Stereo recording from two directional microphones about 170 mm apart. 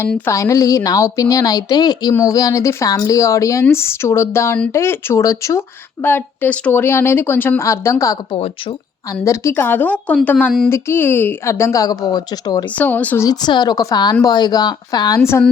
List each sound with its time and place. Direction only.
0.3 s a woman's voice: 20° left (ahead or behind)
12.7 s a woman's voice: 10° left (ahead or behind)
13.2 s speech: 25° left (ahead or behind)